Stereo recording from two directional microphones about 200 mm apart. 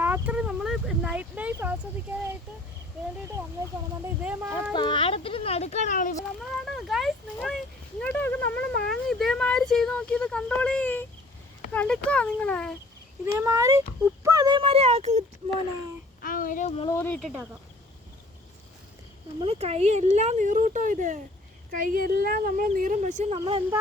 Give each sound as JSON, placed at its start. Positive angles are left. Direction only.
{"t": 0.0, "sound": "a sound", "side_deg": -10}
{"t": 4.0, "sound": "speech", "side_deg": -5}
{"t": 4.7, "sound": "speech", "side_deg": 25}
{"t": 6.7, "sound": "speech", "side_deg": 0}
{"t": 13.4, "sound": "speech", "side_deg": -15}
{"t": 16.2, "sound": "a sound", "side_deg": 45}
{"t": 16.8, "sound": "speech", "side_deg": 10}
{"t": 19.5, "sound": "a woman's voice", "side_deg": -30}